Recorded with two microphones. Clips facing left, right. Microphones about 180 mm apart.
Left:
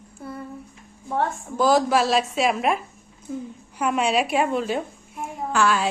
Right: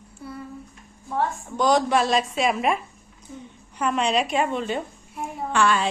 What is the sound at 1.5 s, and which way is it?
A woman's voice, 5° left (ahead or behind).